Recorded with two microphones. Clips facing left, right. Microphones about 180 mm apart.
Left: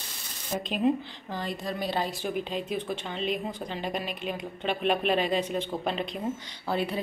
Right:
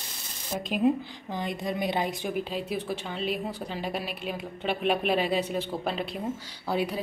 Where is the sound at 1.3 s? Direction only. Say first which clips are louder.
Right 2 dB; 15° right (ahead or behind).